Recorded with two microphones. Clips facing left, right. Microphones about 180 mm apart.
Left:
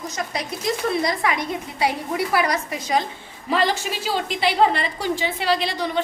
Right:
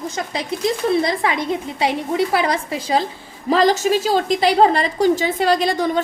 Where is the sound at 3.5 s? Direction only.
40° right (ahead or behind).